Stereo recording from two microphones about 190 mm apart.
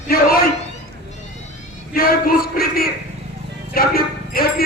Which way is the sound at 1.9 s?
50° left (ahead or behind).